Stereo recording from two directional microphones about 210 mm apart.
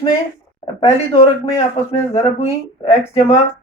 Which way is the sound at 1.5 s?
30° left (ahead or behind).